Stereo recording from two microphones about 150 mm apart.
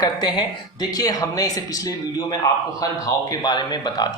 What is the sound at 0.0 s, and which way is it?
A man's voice, 30° left (ahead or behind).